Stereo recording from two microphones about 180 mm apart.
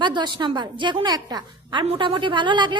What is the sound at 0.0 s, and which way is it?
A woman's voice, 25° right (ahead or behind).